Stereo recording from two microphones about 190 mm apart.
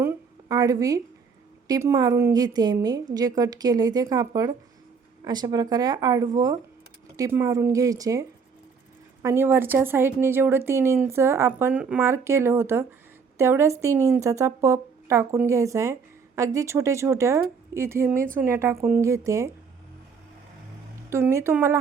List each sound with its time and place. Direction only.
0.0 s a sound: 15° right (ahead or behind)
1.6 s a woman's voice: 15° right (ahead or behind)
9.2 s a woman's voice: 15° right (ahead or behind)
21.1 s a woman's voice: 15° right (ahead or behind)